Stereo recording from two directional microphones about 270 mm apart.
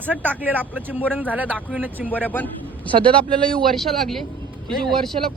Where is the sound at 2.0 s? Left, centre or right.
Centre.